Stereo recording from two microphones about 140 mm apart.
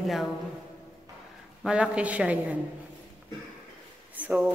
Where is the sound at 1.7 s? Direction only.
10° right (ahead or behind).